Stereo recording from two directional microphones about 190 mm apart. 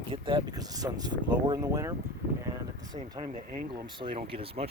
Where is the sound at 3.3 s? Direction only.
45° right (ahead or behind).